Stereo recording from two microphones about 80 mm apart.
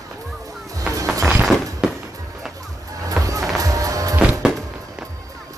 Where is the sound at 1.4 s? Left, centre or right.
Centre.